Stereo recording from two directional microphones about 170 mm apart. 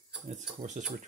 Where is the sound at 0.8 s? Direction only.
50° right (ahead or behind).